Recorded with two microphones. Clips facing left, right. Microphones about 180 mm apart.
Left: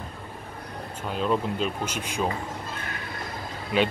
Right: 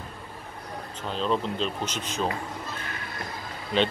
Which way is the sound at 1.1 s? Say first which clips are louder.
Left 1 dB; 10° left (ahead or behind).